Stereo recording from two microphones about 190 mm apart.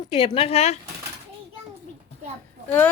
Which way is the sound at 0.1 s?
30° left (ahead or behind).